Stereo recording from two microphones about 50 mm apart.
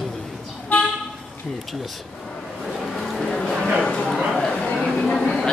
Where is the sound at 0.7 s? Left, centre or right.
Left.